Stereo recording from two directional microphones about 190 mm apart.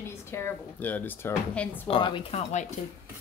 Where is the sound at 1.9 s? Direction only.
25° left (ahead or behind).